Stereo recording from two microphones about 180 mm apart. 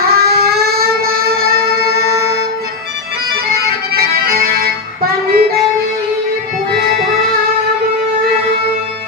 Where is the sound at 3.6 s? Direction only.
55° right (ahead or behind).